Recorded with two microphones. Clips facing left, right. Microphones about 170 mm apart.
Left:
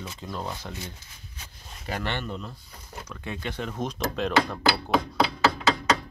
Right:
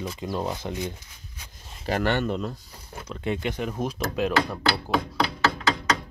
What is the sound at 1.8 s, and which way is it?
Speech, 45° right (ahead or behind).